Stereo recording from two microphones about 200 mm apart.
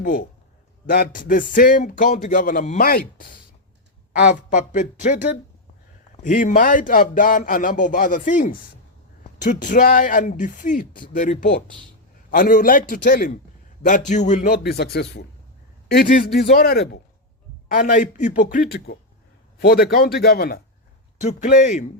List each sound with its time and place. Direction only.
0.0 s speech: 45° left (ahead or behind)
4.5 s a man's voice: 40° left (ahead or behind)
6.2 s a man's voice: 40° left (ahead or behind)
13.8 s a man's voice: 40° left (ahead or behind)
14.5 s speech: 50° left (ahead or behind)
21.2 s a man's voice: 40° left (ahead or behind)